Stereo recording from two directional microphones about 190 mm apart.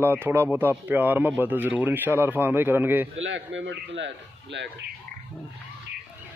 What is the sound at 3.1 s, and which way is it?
Speech, 80° right.